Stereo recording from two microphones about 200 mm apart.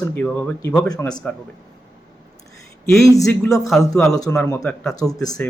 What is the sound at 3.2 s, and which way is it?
Speech, 15° left (ahead or behind).